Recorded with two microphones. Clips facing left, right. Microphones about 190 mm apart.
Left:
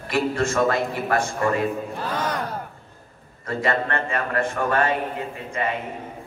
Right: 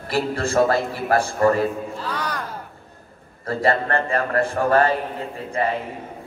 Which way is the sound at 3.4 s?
35° right (ahead or behind).